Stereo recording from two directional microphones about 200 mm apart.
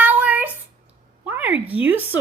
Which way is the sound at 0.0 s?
10° right (ahead or behind).